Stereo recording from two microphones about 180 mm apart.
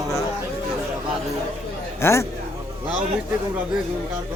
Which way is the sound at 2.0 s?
15° left (ahead or behind).